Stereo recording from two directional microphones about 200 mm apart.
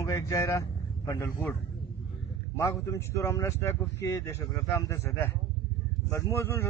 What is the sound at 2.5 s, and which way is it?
Speech, 15° left (ahead or behind).